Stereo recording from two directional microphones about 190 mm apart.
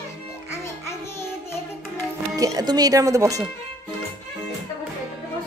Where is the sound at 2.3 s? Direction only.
20° right (ahead or behind).